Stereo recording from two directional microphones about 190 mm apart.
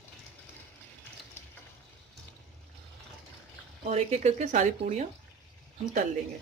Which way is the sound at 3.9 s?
35° right (ahead or behind).